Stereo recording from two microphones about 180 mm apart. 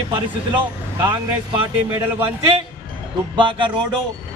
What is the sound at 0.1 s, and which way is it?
Speech, 20° right (ahead or behind).